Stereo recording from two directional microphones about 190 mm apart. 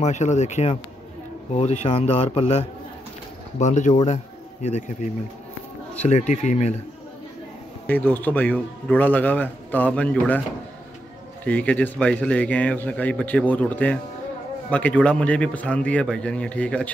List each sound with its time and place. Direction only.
0.0 s speech: 35° left (ahead or behind)
6.0 s speech: 40° left (ahead or behind)
7.8 s a man's voice: 10° left (ahead or behind)
11.4 s a man's voice: 10° left (ahead or behind)